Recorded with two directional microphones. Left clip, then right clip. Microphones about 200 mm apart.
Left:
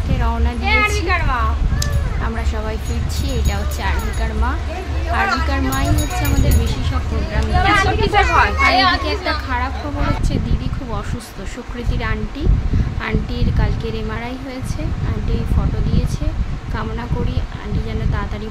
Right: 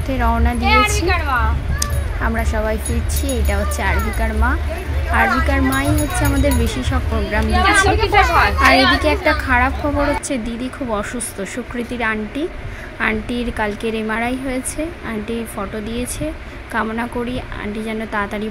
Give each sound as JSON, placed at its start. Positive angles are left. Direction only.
{"t": 0.2, "sound": "a woman's voice", "side_deg": -20}
{"t": 1.8, "sound": "a sound", "side_deg": -20}
{"t": 3.4, "sound": "a woman's voice", "side_deg": -15}
{"t": 8.1, "sound": "speech", "side_deg": 0}
{"t": 9.0, "sound": "speech", "side_deg": -25}
{"t": 12.0, "sound": "a woman's voice", "side_deg": -15}